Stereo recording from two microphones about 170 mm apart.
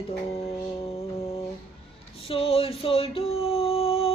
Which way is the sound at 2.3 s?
35° left (ahead or behind).